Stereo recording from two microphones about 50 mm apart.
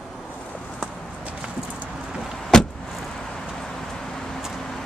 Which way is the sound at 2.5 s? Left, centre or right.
Centre.